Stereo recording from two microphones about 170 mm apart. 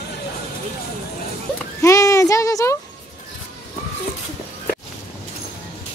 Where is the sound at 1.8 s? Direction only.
20° left (ahead or behind).